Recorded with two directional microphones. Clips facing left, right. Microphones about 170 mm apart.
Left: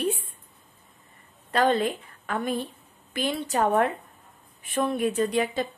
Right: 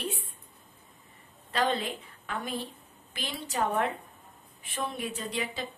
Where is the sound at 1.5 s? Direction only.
50° left (ahead or behind).